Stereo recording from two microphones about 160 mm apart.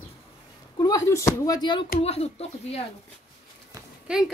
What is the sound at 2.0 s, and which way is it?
Speech, 40° left (ahead or behind).